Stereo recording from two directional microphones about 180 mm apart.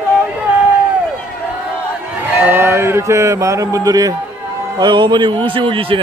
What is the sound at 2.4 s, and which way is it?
A man's voice, 10° right (ahead or behind).